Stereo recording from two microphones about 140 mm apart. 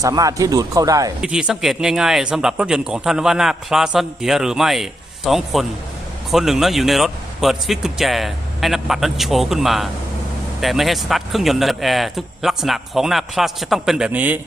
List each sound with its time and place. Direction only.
0.0 s speech: 25° right (ahead or behind)
1.2 s speech: 5° right (ahead or behind)